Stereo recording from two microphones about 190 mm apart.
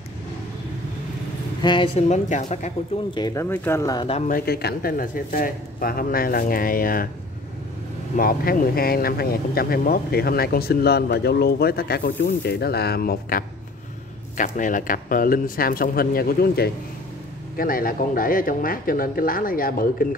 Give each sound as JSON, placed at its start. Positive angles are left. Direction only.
{"t": 1.6, "sound": "a woman's voice", "side_deg": 25}
{"t": 3.2, "sound": "speech", "side_deg": 20}
{"t": 4.3, "sound": "speech", "side_deg": 55}
{"t": 8.2, "sound": "speech", "side_deg": 50}
{"t": 14.3, "sound": "speech", "side_deg": 45}